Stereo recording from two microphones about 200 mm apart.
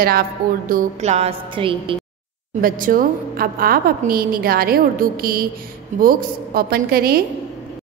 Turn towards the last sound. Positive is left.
turn(degrees=-50)  # may be behind; listen again after turning